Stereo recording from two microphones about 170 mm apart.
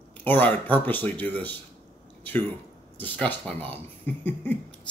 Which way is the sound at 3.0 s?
10° left (ahead or behind).